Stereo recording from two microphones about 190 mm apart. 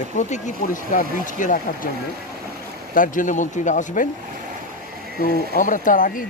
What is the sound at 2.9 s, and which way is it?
Speech, 45° left (ahead or behind).